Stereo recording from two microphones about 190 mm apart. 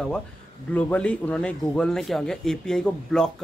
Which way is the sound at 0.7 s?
5° left (ahead or behind).